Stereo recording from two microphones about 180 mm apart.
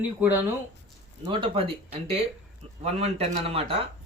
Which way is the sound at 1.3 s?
30° right (ahead or behind).